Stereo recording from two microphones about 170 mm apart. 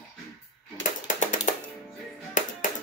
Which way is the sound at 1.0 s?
50° left (ahead or behind).